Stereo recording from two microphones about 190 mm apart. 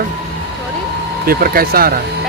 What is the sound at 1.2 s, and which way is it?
Speech, 50° right (ahead or behind).